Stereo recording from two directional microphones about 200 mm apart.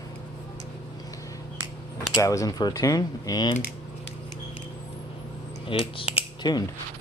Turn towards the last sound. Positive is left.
turn(degrees=20)  # may be behind; listen again after turning